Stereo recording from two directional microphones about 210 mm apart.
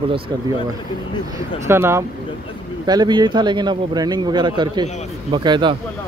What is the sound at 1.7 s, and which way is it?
Speech, 10° right (ahead or behind).